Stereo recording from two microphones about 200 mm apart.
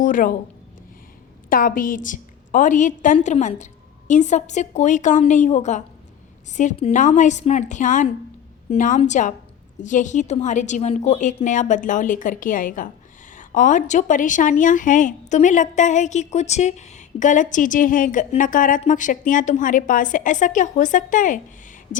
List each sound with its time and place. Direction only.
0.0 s a woman's voice: 45° left (ahead or behind)
1.5 s a woman's voice: 45° left (ahead or behind)